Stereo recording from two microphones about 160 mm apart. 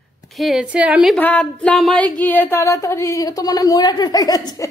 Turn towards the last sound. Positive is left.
turn(degrees=25)  # may be behind; listen again after turning